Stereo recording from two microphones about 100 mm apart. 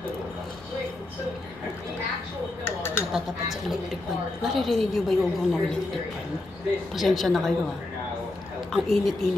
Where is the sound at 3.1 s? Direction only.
5° right (ahead or behind).